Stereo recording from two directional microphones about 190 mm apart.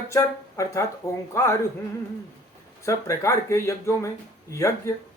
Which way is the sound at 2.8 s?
15° left (ahead or behind).